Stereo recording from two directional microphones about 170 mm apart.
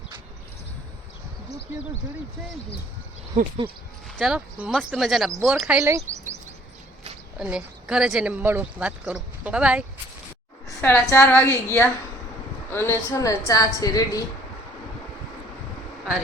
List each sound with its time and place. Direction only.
4.2 s speech: 5° right (ahead or behind)
7.3 s speech: 5° right (ahead or behind)
10.8 s a woman's voice: 10° left (ahead or behind)